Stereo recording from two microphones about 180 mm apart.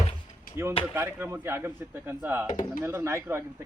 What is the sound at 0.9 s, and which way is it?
Speech, 15° right (ahead or behind).